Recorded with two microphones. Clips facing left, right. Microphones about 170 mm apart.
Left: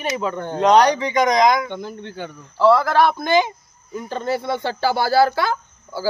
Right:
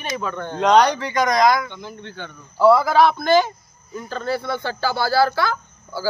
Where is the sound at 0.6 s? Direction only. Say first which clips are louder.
Left 1 dB; 10° left (ahead or behind).